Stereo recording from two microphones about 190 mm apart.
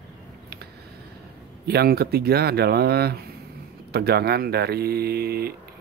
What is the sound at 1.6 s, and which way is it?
Speech, 55° right (ahead or behind).